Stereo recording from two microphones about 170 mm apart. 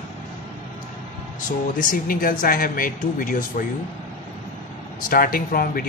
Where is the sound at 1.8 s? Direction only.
55° left (ahead or behind).